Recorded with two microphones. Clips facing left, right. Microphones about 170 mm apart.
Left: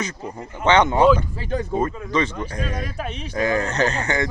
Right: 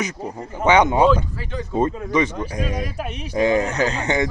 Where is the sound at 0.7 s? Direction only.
15° right (ahead or behind).